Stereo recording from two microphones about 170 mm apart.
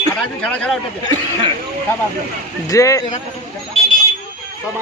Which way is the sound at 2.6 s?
20° left (ahead or behind).